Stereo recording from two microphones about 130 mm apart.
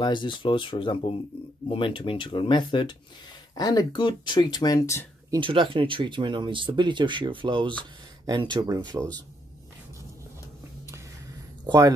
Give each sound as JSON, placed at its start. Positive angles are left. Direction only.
{"t": 0.0, "sound": "speech", "side_deg": 35}
{"t": 5.3, "sound": "speech", "side_deg": -40}
{"t": 11.6, "sound": "speech", "side_deg": -25}